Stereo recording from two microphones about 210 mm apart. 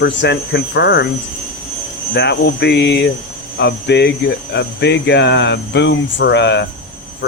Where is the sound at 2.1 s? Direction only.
55° left (ahead or behind).